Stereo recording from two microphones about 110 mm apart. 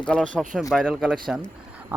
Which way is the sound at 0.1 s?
5° left (ahead or behind).